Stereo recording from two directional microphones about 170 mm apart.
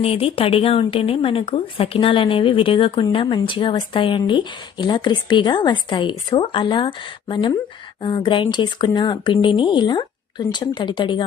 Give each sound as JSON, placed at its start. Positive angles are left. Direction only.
{"t": 0.0, "sound": "speech", "side_deg": 35}